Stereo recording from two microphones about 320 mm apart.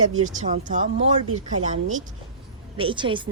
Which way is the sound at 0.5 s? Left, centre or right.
Right.